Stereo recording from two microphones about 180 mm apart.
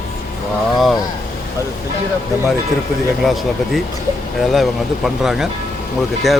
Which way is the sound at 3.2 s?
Centre (ahead or behind).